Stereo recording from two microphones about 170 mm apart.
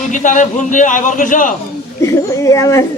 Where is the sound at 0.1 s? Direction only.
50° left (ahead or behind).